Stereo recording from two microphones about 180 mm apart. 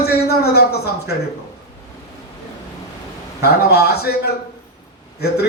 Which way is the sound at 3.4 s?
60° left (ahead or behind).